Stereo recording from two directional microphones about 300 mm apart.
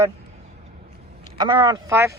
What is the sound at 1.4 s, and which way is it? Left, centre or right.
Speech, centre.